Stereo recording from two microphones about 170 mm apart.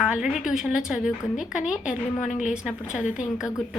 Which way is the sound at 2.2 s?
45° left (ahead or behind).